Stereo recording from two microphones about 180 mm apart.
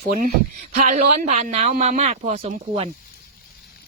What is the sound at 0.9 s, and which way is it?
Speech, 40° right (ahead or behind).